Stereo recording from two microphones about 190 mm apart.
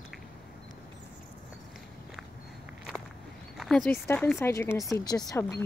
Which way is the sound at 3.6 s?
Centre (ahead or behind).